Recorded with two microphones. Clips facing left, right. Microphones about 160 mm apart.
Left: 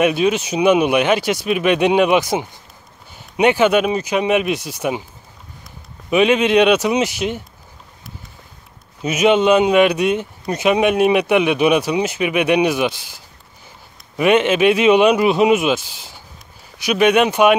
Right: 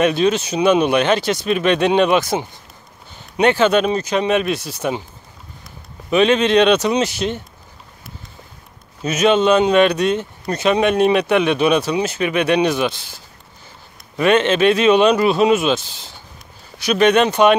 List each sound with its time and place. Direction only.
0.0 s speech: 10° left (ahead or behind)
6.0 s speech: 10° left (ahead or behind)
9.0 s speech: 10° left (ahead or behind)